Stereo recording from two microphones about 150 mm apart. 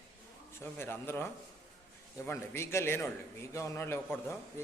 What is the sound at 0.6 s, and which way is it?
A man's voice, 15° left (ahead or behind).